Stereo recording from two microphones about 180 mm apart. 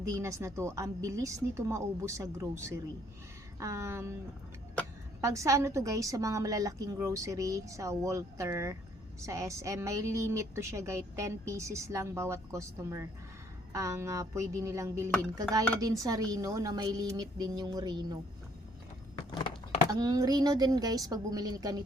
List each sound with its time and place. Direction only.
0.0 s a woman's voice: 15° right (ahead or behind)
5.2 s a woman's voice: 15° right (ahead or behind)
19.1 s a sound: 25° left (ahead or behind)
19.9 s a woman's voice: 20° right (ahead or behind)